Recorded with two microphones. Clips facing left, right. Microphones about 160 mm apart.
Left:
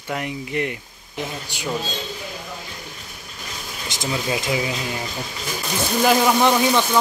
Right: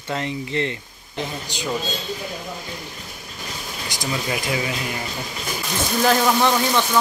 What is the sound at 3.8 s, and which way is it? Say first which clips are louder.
Speech: left 1 dB; 20° left (ahead or behind).